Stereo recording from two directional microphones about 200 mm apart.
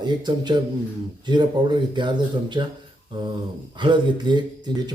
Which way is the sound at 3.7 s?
25° right (ahead or behind).